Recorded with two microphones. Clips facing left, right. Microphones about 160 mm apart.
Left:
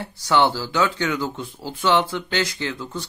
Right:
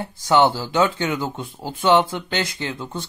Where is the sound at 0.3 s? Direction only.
20° right (ahead or behind).